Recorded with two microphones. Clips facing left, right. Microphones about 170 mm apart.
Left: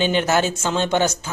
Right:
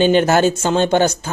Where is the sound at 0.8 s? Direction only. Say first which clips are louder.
Right 5 dB; 45° right (ahead or behind).